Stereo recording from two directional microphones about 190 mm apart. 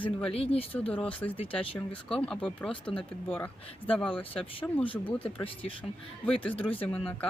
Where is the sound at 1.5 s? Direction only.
10° left (ahead or behind).